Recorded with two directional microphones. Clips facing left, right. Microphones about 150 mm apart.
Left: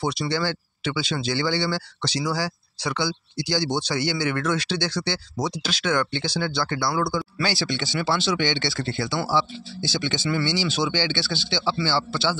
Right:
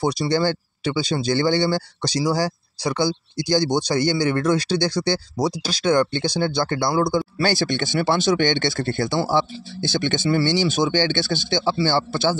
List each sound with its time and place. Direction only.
0.0 s speech: 40° right (ahead or behind)